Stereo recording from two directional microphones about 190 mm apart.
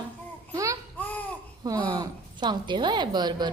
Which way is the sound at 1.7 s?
20° right (ahead or behind).